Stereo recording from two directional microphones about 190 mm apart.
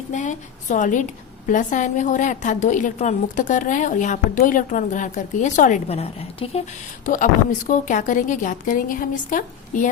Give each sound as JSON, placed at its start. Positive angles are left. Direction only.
{"t": 0.1, "sound": "a woman's voice", "side_deg": 40}
{"t": 7.0, "sound": "a woman's voice", "side_deg": 45}